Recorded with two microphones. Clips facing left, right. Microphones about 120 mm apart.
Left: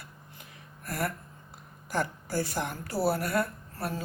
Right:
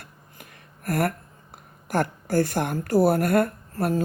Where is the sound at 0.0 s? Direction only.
55° right (ahead or behind).